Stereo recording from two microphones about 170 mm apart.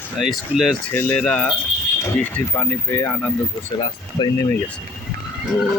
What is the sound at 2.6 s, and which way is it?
Speech, 15° left (ahead or behind).